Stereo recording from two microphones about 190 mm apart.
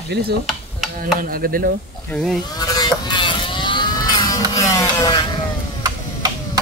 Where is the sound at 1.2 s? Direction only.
50° right (ahead or behind).